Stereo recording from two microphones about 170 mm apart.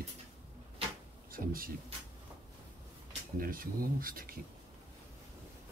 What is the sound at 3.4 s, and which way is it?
Speech, 55° right (ahead or behind).